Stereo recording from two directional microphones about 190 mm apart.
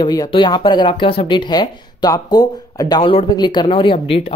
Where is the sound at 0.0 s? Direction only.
20° left (ahead or behind).